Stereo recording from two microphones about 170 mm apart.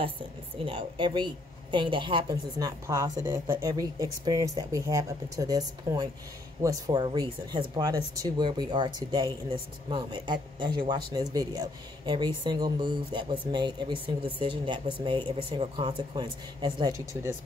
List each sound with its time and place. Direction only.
0.7 s a woman's voice: 30° right (ahead or behind)